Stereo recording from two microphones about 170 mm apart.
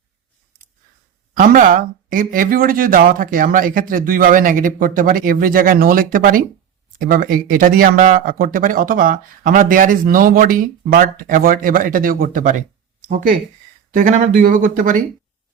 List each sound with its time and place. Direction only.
1.4 s speech: 55° right (ahead or behind)